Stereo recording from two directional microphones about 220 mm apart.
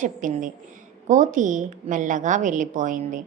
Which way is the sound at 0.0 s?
35° right (ahead or behind).